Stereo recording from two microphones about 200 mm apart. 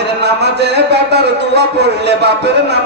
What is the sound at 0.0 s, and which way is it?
Speech, 55° right (ahead or behind).